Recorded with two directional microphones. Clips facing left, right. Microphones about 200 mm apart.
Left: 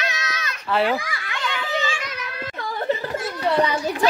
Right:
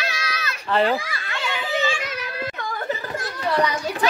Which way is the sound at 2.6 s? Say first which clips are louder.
Left 7 dB; 30° left (ahead or behind).